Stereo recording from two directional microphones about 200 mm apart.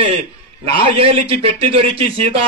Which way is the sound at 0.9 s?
30° right (ahead or behind).